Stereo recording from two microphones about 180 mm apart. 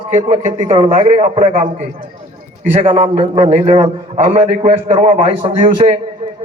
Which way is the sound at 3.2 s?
30° right (ahead or behind).